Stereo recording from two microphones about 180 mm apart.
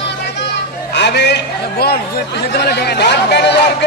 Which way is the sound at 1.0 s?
70° left (ahead or behind).